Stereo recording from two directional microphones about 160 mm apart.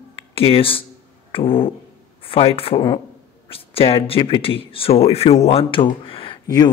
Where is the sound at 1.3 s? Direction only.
35° left (ahead or behind).